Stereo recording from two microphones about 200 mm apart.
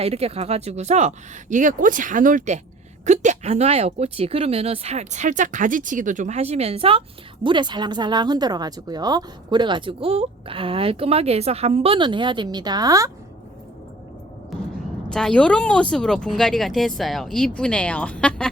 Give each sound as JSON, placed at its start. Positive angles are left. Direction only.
{"t": 0.0, "sound": "speech", "side_deg": -30}
{"t": 14.5, "sound": "speech", "side_deg": 0}